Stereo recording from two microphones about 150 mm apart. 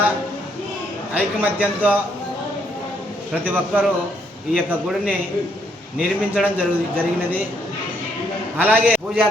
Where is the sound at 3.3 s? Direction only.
10° right (ahead or behind).